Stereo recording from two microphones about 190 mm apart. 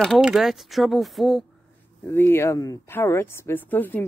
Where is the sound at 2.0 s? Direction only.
10° left (ahead or behind).